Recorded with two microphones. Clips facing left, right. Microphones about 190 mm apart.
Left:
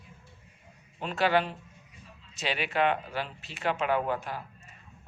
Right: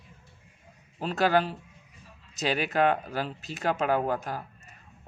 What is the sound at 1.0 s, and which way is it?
Speech, 40° right (ahead or behind).